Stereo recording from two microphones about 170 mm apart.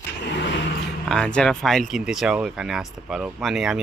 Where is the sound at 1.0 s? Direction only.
5° left (ahead or behind).